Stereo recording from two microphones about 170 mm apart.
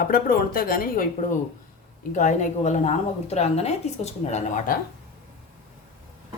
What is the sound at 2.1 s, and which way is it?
A woman's voice, 45° left (ahead or behind).